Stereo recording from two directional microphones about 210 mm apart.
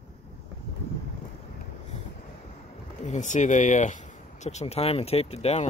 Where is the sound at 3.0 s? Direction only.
35° left (ahead or behind).